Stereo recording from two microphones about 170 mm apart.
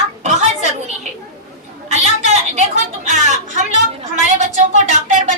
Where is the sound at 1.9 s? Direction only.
40° right (ahead or behind).